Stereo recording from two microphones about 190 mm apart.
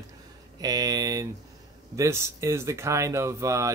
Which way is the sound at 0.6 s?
20° right (ahead or behind).